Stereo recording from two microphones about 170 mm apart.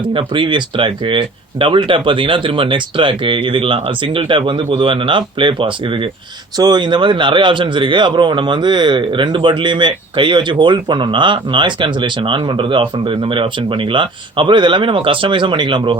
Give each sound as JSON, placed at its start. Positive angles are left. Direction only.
{"t": 0.1, "sound": "a man's voice", "side_deg": -30}